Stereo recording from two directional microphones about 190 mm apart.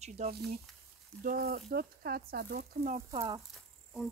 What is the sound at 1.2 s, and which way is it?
Speech, 50° right (ahead or behind).